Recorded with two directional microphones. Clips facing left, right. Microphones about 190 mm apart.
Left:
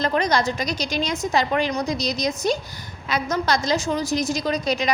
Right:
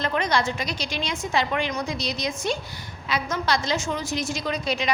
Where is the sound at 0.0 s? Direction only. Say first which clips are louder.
Left 3 dB; 40° left (ahead or behind).